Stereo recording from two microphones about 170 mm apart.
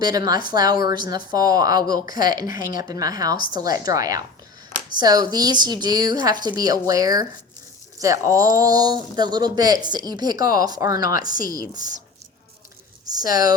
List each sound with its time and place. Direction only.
0.0 s speech: 25° right (ahead or behind)
11.3 s speech: 55° left (ahead or behind)
13.1 s speech: 20° right (ahead or behind)